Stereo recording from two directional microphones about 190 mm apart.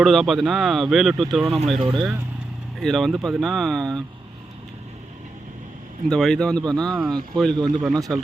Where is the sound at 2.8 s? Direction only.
Centre (ahead or behind).